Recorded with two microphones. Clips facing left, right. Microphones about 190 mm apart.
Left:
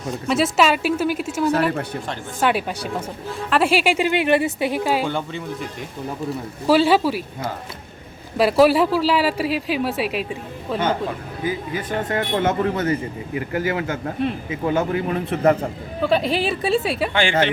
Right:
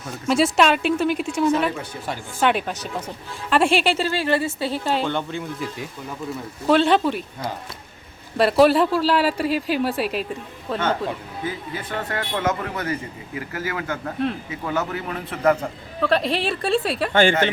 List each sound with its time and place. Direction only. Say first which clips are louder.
0.3 s speech: right 1 dB; centre (ahead or behind)
1.7 s speech: left 6 dB; 60° left (ahead or behind)
2.4 s a woman's voice: even; 5° left (ahead or behind)
6.7 s speech: left 1 dB; 5° left (ahead or behind)
8.4 s speech: left 1 dB; centre (ahead or behind)
11.4 s a man's voice: left 5 dB; 20° left (ahead or behind)
16.0 s speech: left 2 dB; centre (ahead or behind)
17.1 s speech: right 8 dB; 45° right (ahead or behind)